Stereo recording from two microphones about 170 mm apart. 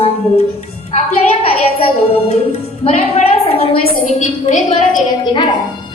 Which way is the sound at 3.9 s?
50° left (ahead or behind).